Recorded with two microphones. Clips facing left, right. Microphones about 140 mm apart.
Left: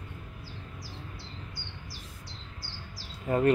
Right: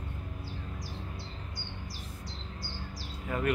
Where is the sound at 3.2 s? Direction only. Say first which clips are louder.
Left 7 dB; 35° left (ahead or behind).